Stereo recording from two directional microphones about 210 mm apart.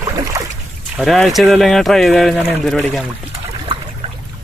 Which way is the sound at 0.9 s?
Centre (ahead or behind).